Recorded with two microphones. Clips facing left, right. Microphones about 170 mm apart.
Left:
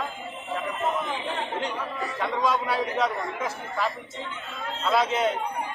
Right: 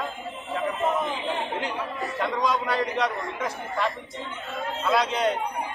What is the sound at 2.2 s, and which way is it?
A man's voice, centre (ahead or behind).